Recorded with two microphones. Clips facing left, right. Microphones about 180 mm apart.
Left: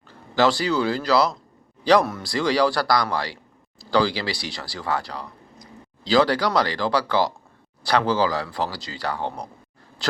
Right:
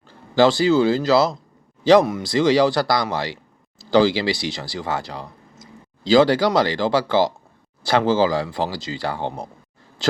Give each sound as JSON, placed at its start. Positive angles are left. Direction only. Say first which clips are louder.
{"t": 0.3, "sound": "speech", "louder": "right 5 dB", "side_deg": -25}